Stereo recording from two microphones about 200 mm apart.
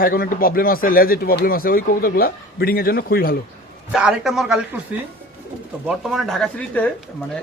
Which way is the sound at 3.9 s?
5° right (ahead or behind).